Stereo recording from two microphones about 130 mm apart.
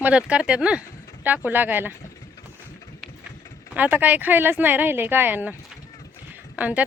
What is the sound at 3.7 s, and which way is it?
Speech, 10° right (ahead or behind).